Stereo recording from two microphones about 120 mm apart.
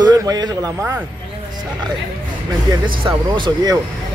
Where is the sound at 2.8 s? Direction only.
40° right (ahead or behind).